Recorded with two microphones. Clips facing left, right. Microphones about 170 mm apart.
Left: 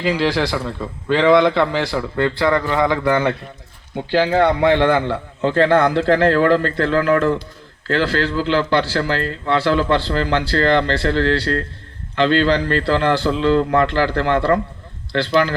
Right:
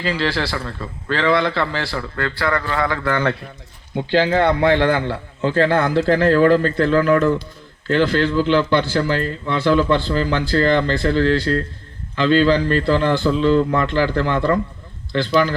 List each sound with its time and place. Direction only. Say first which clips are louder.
0.0 s speech: left 3 dB; 15° left (ahead or behind)
4.9 s a man's voice: left 3 dB; 5° right (ahead or behind)